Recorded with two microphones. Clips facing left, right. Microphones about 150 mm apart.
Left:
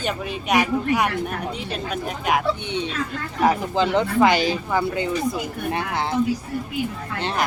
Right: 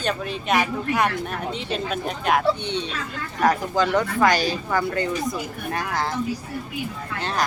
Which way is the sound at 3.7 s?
20° left (ahead or behind).